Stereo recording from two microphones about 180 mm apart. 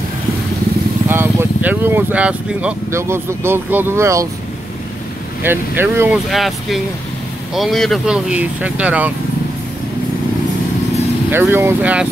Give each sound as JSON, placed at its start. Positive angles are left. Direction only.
{"t": 1.0, "sound": "speech", "side_deg": -15}
{"t": 5.4, "sound": "speech", "side_deg": -10}
{"t": 11.3, "sound": "speech", "side_deg": -10}